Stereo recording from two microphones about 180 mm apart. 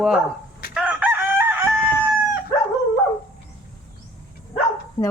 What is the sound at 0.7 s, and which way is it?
Chicken, 5° right (ahead or behind).